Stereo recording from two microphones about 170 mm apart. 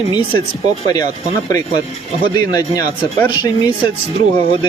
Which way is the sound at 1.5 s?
20° left (ahead or behind).